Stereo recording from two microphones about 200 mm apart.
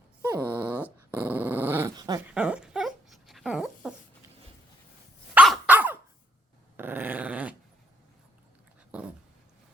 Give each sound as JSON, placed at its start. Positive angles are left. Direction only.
{"t": 0.2, "sound": "dog", "side_deg": -15}
{"t": 2.3, "sound": "dog", "side_deg": -5}
{"t": 5.3, "sound": "dog", "side_deg": -5}
{"t": 8.9, "sound": "dog", "side_deg": -5}